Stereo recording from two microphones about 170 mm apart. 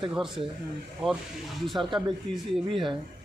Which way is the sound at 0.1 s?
5° right (ahead or behind).